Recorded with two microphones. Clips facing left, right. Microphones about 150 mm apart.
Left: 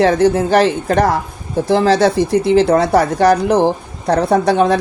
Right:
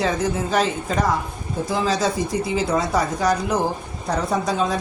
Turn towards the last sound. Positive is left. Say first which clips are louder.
# left 9 dB
turn(degrees=70)  # may be behind; listen again after turning